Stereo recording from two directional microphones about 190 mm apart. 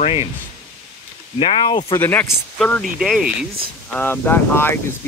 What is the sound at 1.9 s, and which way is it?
Speech, 10° left (ahead or behind).